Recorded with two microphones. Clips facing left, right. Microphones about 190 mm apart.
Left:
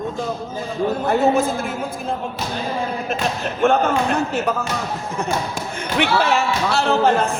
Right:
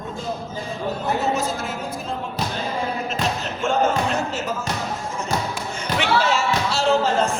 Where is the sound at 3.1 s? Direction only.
55° left (ahead or behind).